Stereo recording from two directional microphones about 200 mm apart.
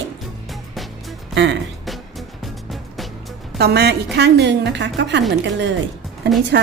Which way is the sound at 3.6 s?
55° right (ahead or behind).